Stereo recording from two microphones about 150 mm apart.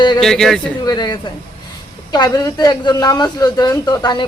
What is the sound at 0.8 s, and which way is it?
Speech, 25° left (ahead or behind).